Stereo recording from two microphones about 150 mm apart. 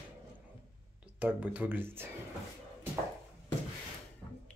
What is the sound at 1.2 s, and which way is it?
Speech, 10° right (ahead or behind).